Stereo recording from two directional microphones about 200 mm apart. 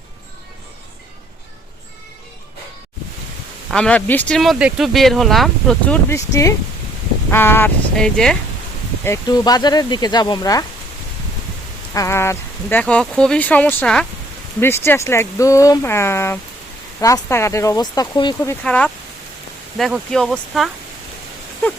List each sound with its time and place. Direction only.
3.7 s speech: 5° left (ahead or behind)
9.0 s speech: 20° left (ahead or behind)
11.9 s speech: 15° left (ahead or behind)
18.6 s speech: 5° left (ahead or behind)